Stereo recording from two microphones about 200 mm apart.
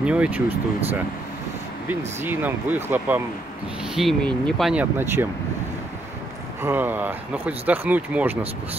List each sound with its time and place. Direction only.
0.0 s speech: 5° right (ahead or behind)
0.5 s speech: 30° right (ahead or behind)
1.9 s speech: 10° right (ahead or behind)
6.6 s speech: 10° right (ahead or behind)